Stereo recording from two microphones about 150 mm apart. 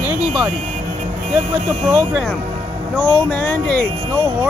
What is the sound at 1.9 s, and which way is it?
Speech, 10° right (ahead or behind).